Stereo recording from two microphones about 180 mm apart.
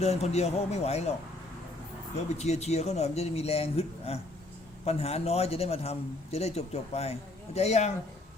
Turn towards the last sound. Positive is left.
turn(degrees=40)  # may be behind; listen again after turning